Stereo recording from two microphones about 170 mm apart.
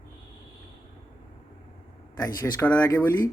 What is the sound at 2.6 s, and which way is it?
Speech, 10° left (ahead or behind).